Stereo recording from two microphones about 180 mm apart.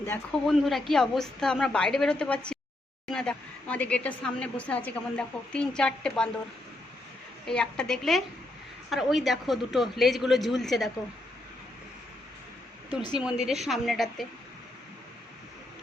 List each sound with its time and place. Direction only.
0.4 s a woman's voice: centre (ahead or behind)
7.4 s a woman's voice: 5° left (ahead or behind)
12.9 s a woman's voice: 25° left (ahead or behind)
13.1 s a woman's voice: 5° right (ahead or behind)